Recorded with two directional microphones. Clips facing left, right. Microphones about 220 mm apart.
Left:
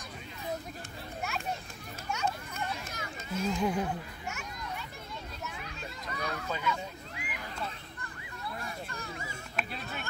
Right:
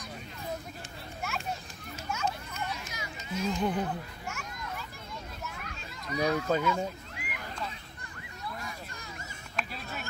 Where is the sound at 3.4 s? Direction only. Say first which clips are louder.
Even; 5° left (ahead or behind).